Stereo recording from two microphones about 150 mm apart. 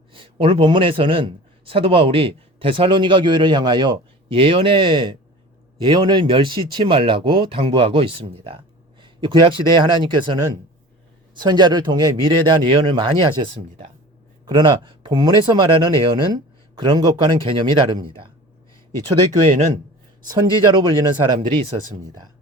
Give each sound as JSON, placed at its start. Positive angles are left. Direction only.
{"t": 0.1, "sound": "speech", "side_deg": -35}
{"t": 11.3, "sound": "speech", "side_deg": -30}
{"t": 14.4, "sound": "speech", "side_deg": -30}
{"t": 19.5, "sound": "a man's voice", "side_deg": -55}
{"t": 20.2, "sound": "speech", "side_deg": -30}